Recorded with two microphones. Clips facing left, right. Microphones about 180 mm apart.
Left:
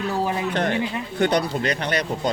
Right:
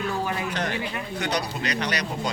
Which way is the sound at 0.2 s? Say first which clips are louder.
Left 5 dB; 25° left (ahead or behind).